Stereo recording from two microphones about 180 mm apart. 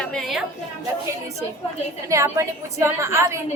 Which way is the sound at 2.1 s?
15° right (ahead or behind).